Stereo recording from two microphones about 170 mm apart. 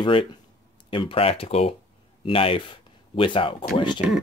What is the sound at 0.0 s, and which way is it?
Speech, 30° left (ahead or behind).